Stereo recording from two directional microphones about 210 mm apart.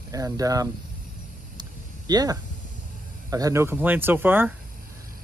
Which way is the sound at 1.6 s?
20° right (ahead or behind).